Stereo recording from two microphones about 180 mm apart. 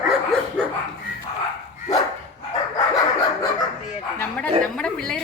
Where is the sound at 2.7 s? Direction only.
20° left (ahead or behind).